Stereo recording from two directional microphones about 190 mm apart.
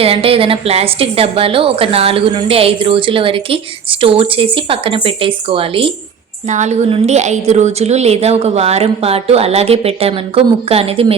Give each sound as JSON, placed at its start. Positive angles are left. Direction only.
{"t": 0.0, "sound": "a woman's voice", "side_deg": -30}